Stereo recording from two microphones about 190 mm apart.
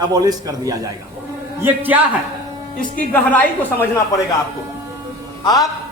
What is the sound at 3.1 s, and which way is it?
A woman's voice, 10° left (ahead or behind).